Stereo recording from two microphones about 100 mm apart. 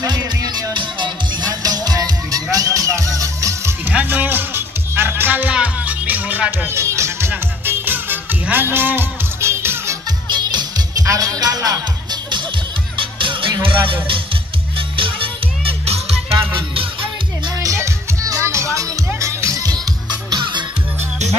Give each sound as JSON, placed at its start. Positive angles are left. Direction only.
{"t": 0.0, "sound": "music", "side_deg": -45}
{"t": 3.8, "sound": "music", "side_deg": -20}
{"t": 10.2, "sound": "music", "side_deg": -45}
{"t": 13.0, "sound": "music", "side_deg": -60}
{"t": 15.0, "sound": "music", "side_deg": -60}
{"t": 17.6, "sound": "music", "side_deg": -35}